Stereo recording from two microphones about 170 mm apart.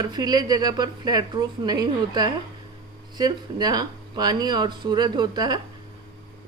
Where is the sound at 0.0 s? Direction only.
25° right (ahead or behind).